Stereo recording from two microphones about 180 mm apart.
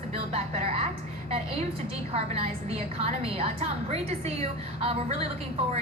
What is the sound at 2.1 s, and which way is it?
A woman's voice, 35° right (ahead or behind).